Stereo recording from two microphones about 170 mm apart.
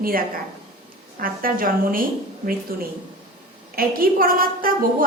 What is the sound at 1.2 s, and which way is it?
Speech, 55° right (ahead or behind).